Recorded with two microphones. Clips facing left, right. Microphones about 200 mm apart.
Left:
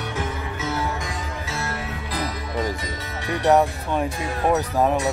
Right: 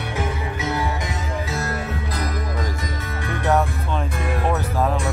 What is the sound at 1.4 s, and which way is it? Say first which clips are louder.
Music: right 3 dB; 40° right (ahead or behind).